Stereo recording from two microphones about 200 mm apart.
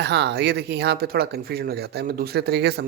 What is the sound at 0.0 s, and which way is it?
Speech, 60° right (ahead or behind).